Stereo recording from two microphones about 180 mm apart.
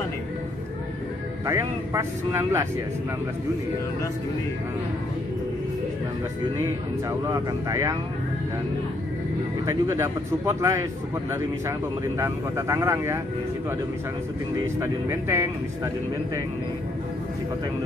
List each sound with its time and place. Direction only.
1.4 s speech: 15° right (ahead or behind)
6.6 s speech: 15° right (ahead or behind)
9.7 s speech: 15° right (ahead or behind)
12.2 s speech: 15° right (ahead or behind)
14.8 s speech: 15° right (ahead or behind)